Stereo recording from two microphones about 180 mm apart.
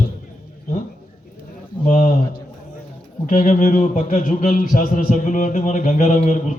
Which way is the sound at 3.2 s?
45° left (ahead or behind).